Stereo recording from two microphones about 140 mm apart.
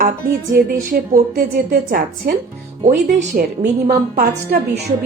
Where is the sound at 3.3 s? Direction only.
75° right (ahead or behind).